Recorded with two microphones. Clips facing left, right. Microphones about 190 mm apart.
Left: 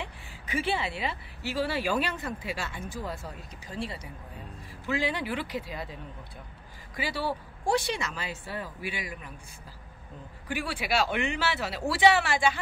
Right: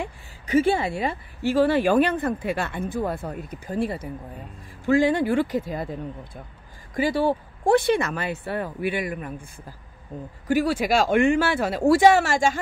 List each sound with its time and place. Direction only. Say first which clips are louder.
0.0 s speech: right 7 dB; 45° right (ahead or behind)
10.5 s speech: right 9 dB; 45° right (ahead or behind)